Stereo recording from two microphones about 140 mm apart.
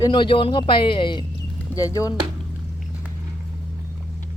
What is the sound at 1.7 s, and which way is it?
Speech, 25° left (ahead or behind).